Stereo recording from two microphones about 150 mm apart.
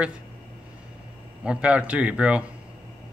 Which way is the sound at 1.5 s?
10° right (ahead or behind).